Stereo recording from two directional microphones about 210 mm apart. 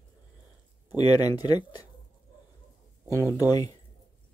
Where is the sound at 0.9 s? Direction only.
20° left (ahead or behind).